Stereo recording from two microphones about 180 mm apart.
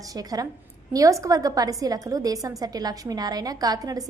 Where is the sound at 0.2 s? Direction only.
20° right (ahead or behind).